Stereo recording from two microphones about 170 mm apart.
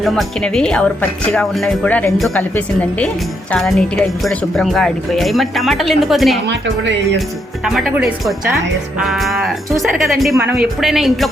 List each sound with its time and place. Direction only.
0.0 s a woman's voice: centre (ahead or behind)
6.5 s speech: 90° right
7.6 s speech: 5° right (ahead or behind)
10.4 s speech: 15° right (ahead or behind)
10.8 s speech: centre (ahead or behind)